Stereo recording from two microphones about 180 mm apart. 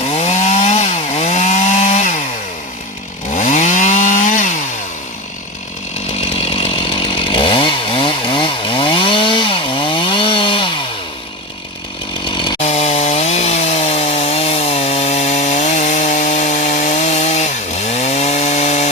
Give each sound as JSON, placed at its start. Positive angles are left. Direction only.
{"t": 0.0, "sound": "chainsaw", "side_deg": 35}
{"t": 3.3, "sound": "chainsaw", "side_deg": 45}
{"t": 6.1, "sound": "chainsaw", "side_deg": 35}
{"t": 12.2, "sound": "chainsaw", "side_deg": 25}
{"t": 12.6, "sound": "chainsaw", "side_deg": 40}